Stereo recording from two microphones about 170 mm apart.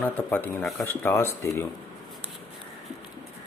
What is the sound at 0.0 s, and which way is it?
Speech, 10° left (ahead or behind).